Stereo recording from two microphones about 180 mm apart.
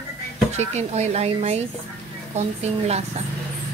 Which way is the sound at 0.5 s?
40° right (ahead or behind).